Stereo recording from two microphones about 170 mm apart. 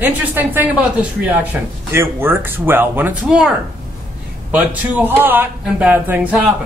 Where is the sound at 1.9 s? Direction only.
15° right (ahead or behind).